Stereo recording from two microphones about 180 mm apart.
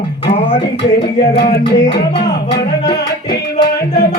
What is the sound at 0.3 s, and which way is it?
Music, 30° left (ahead or behind).